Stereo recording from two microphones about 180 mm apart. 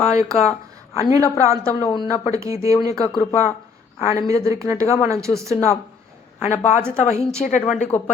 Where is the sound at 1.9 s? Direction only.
30° left (ahead or behind).